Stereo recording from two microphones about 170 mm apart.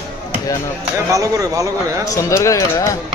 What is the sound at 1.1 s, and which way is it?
Speech, 20° right (ahead or behind).